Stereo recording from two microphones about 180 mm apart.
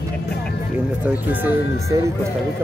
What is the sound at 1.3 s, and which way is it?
Speech, 10° right (ahead or behind).